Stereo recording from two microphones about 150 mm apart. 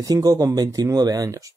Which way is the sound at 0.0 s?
25° right (ahead or behind).